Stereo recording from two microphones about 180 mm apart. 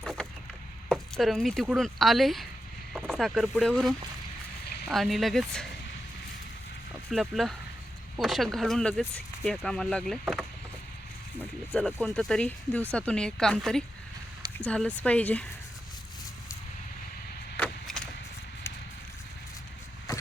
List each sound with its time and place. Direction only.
0.0 s a sound: centre (ahead or behind)
1.6 s speech: centre (ahead or behind)
7.1 s speech: centre (ahead or behind)
11.9 s speech: 5° left (ahead or behind)
17.6 s chop: 5° left (ahead or behind)
20.1 s vehicle: 20° left (ahead or behind)